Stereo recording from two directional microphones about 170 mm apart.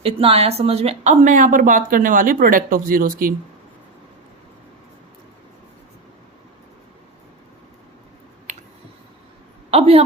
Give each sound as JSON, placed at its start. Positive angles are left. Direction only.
{"t": 0.0, "sound": "speech", "side_deg": -35}
{"t": 9.7, "sound": "a woman's voice", "side_deg": -35}